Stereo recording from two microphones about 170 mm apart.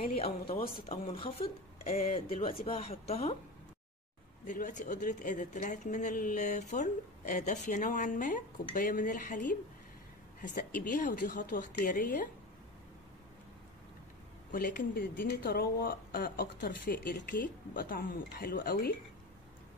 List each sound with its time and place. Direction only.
0.0 s speech: 35° left (ahead or behind)
4.5 s a woman's voice: 50° left (ahead or behind)
14.5 s speech: 55° left (ahead or behind)